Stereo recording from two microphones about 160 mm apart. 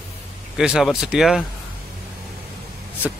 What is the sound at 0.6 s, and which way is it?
Speech, 5° right (ahead or behind).